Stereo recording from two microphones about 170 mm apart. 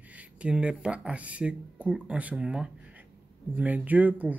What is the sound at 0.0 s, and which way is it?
Speech, 10° right (ahead or behind).